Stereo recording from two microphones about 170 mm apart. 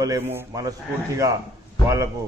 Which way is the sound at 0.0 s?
15° right (ahead or behind).